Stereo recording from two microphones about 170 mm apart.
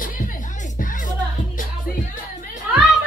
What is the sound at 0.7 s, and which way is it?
Music, 50° left (ahead or behind).